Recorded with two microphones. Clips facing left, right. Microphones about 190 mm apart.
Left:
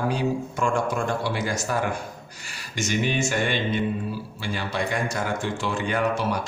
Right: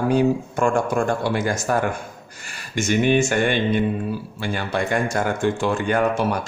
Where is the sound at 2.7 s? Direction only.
55° right (ahead or behind).